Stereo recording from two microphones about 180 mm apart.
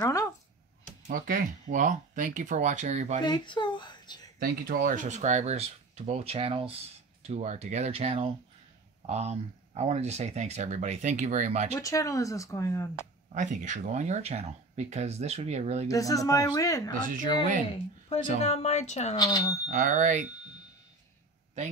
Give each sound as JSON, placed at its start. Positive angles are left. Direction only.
{"t": 0.0, "sound": "a sound", "side_deg": 15}
{"t": 1.0, "sound": "speech", "side_deg": -55}
{"t": 3.3, "sound": "speech", "side_deg": 25}
{"t": 4.4, "sound": "speech", "side_deg": -55}
{"t": 11.8, "sound": "speech", "side_deg": 20}
{"t": 13.3, "sound": "speech", "side_deg": -45}
{"t": 15.9, "sound": "speech", "side_deg": 20}
{"t": 18.4, "sound": "speech", "side_deg": 35}
{"t": 19.1, "sound": "speech", "side_deg": 20}
{"t": 19.7, "sound": "speech", "side_deg": -45}